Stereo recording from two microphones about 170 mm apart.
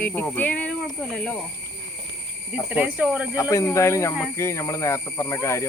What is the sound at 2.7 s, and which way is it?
Speech, 10° right (ahead or behind).